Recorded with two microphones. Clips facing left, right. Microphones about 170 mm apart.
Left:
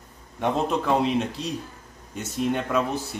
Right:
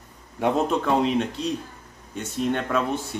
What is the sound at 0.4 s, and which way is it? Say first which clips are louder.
Speech: right 2 dB; centre (ahead or behind).